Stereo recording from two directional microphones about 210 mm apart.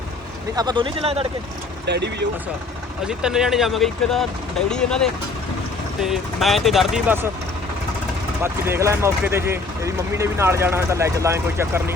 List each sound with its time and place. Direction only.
0.5 s speech: 20° right (ahead or behind)
1.9 s speech: 55° right (ahead or behind)
3.1 s speech: 5° right (ahead or behind)
6.0 s speech: centre (ahead or behind)
8.4 s speech: 10° right (ahead or behind)